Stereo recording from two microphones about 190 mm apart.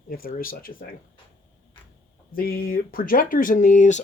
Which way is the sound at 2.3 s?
50° left (ahead or behind).